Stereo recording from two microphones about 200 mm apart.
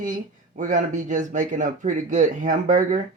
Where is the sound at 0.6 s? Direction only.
40° right (ahead or behind).